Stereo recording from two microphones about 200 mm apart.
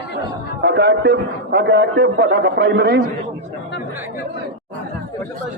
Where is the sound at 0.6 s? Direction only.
60° right (ahead or behind).